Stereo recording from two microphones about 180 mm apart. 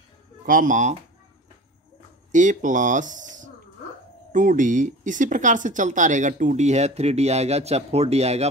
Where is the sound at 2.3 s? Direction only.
45° right (ahead or behind).